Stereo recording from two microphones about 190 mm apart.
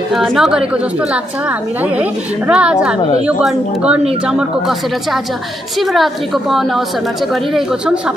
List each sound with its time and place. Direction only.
0.1 s a woman's voice: centre (ahead or behind)
2.0 s a woman's voice: 5° right (ahead or behind)